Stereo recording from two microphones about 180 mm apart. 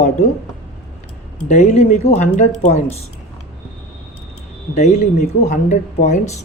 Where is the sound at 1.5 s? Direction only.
40° left (ahead or behind).